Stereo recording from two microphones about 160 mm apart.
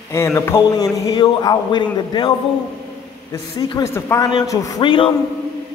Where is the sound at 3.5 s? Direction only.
20° left (ahead or behind).